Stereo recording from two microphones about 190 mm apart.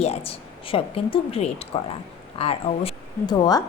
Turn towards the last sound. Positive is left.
turn(degrees=20)  # may be behind; listen again after turning